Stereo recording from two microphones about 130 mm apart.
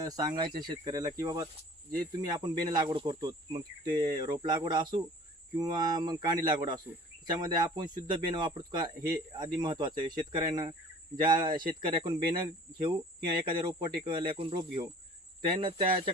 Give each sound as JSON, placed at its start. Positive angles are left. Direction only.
{"t": 0.0, "sound": "speech", "side_deg": -30}
{"t": 13.4, "sound": "speech", "side_deg": -40}